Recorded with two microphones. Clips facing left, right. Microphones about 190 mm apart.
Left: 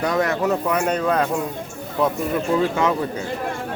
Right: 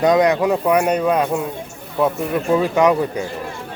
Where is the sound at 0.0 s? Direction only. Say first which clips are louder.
Right 6 dB; 20° right (ahead or behind).